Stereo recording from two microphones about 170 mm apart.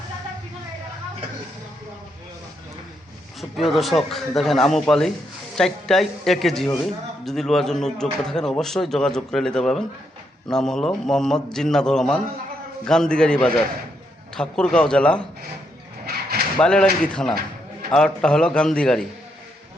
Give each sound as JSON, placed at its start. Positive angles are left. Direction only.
{"t": 3.6, "sound": "speech", "side_deg": 0}
{"t": 16.6, "sound": "speech", "side_deg": 5}